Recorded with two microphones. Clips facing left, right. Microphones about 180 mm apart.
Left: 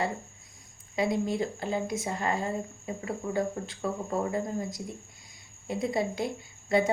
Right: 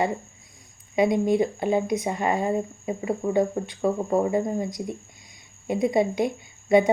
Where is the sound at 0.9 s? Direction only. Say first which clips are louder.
Right 7 dB; 20° right (ahead or behind).